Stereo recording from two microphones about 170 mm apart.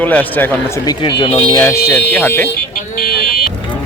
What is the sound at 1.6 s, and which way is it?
Speech, 15° left (ahead or behind).